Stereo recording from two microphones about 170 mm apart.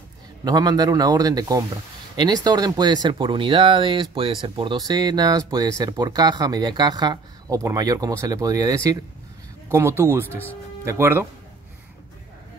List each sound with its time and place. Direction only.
0.5 s speech: 20° right (ahead or behind)